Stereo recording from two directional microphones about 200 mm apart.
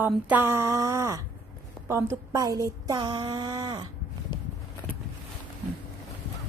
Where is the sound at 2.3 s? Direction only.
15° right (ahead or behind).